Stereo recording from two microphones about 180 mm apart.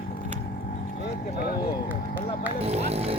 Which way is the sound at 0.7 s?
60° left (ahead or behind).